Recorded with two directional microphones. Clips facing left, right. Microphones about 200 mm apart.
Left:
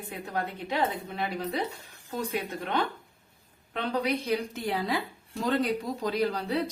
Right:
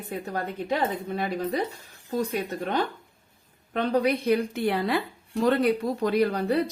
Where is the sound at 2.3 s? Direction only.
45° right (ahead or behind).